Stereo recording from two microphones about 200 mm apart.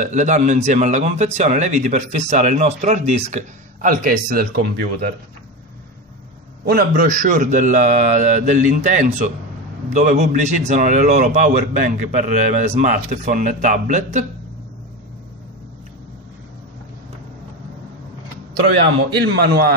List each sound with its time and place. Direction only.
0.0 s speech: 35° right (ahead or behind)
6.6 s speech: 50° right (ahead or behind)
19.2 s a man's voice: 55° right (ahead or behind)